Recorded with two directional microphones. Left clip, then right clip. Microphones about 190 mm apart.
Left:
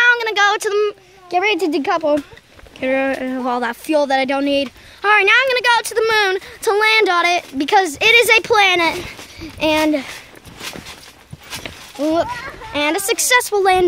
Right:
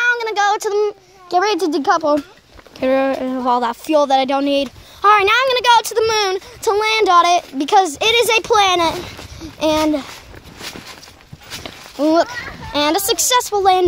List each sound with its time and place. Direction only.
0.0 s a sound: 10° left (ahead or behind)
2.0 s speech: centre (ahead or behind)
2.8 s speech: 15° right (ahead or behind)
3.1 s speech: 5° right (ahead or behind)
6.0 s speech: centre (ahead or behind)
12.0 s a child's voice: 25° right (ahead or behind)
12.7 s speech: 10° right (ahead or behind)
13.3 s speech: 5° left (ahead or behind)